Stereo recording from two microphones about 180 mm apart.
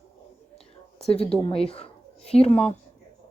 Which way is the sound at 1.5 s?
30° left (ahead or behind).